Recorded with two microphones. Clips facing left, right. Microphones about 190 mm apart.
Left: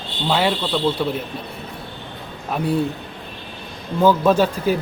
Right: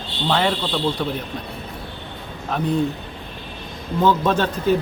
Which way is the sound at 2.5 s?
10° left (ahead or behind).